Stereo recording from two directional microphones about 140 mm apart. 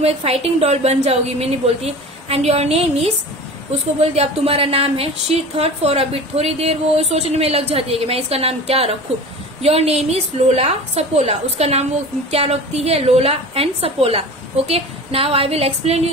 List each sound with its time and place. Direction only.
0.0 s a woman's voice: 45° right (ahead or behind)